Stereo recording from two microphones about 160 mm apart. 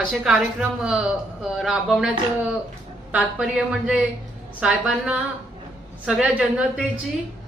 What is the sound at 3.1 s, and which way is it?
A woman's voice, 5° right (ahead or behind).